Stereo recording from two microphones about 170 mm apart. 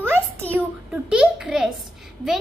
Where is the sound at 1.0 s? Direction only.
5° right (ahead or behind).